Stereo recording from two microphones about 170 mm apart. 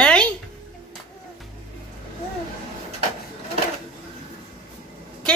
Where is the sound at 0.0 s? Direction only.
5° left (ahead or behind).